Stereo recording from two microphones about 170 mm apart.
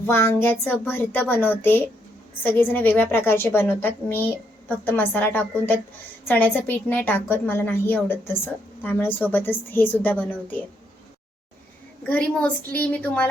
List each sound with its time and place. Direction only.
0.0 s a woman's voice: 15° left (ahead or behind)
12.0 s a woman's voice: 10° left (ahead or behind)